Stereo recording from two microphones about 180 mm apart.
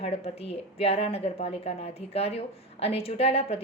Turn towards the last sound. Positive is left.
turn(degrees=35)  # may be behind; listen again after turning